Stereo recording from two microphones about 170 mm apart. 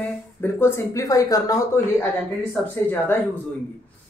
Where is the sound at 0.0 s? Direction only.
10° left (ahead or behind).